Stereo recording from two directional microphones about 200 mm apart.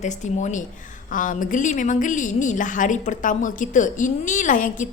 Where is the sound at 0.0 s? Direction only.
35° left (ahead or behind).